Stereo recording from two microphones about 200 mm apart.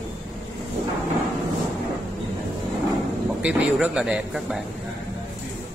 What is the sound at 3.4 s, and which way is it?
Speech, 5° right (ahead or behind).